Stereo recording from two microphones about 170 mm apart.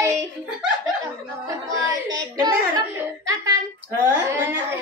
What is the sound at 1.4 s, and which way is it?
Speech, 20° right (ahead or behind).